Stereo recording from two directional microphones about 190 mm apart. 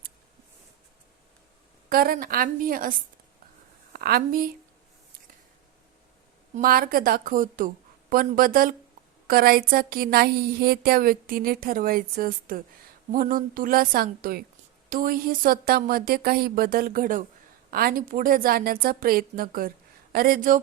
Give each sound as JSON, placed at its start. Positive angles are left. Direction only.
{"t": 1.9, "sound": "a woman's voice", "side_deg": -50}
{"t": 3.9, "sound": "a woman's voice", "side_deg": -50}
{"t": 6.6, "sound": "a woman's voice", "side_deg": -50}